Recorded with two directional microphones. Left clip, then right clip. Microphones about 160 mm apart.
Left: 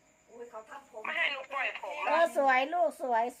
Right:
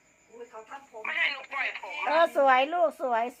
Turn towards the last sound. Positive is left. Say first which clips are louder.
# right 2 dB
turn(degrees=-35)  # may be behind; listen again after turning